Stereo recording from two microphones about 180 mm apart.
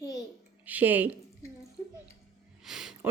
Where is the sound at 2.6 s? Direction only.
Centre (ahead or behind).